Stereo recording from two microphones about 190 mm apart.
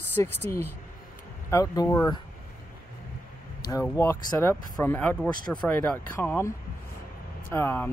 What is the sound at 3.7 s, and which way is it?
Speech, 15° left (ahead or behind).